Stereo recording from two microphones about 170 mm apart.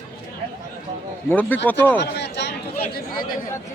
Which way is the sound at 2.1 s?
85° left.